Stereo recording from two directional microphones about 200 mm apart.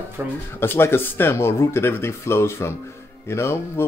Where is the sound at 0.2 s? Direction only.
10° right (ahead or behind).